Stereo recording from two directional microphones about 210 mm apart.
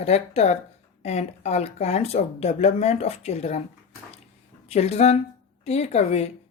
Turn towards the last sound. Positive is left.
turn(degrees=30)  # may be behind; listen again after turning